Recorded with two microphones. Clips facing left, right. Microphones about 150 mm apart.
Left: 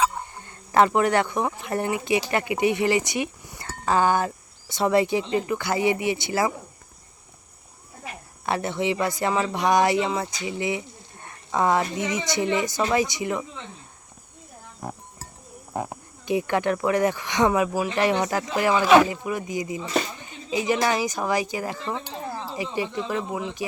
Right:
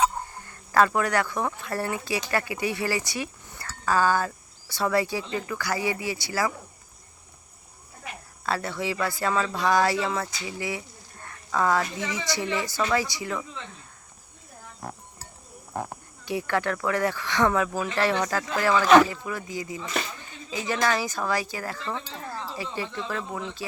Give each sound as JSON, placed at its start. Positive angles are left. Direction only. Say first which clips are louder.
{"t": 0.4, "sound": "speech", "louder": "left 2 dB", "side_deg": 20}
{"t": 8.4, "sound": "speech", "louder": "left 4 dB", "side_deg": 20}
{"t": 15.7, "sound": "a woman's voice", "louder": "left 3 dB", "side_deg": 15}